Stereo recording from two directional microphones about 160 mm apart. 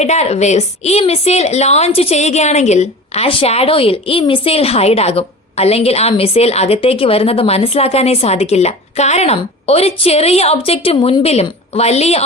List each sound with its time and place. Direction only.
0.0 s a woman's voice: 45° left (ahead or behind)